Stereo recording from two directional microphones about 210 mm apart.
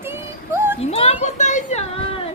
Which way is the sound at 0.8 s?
30° left (ahead or behind).